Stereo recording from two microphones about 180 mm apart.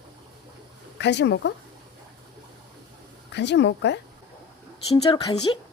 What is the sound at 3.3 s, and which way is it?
Speech, 75° left (ahead or behind).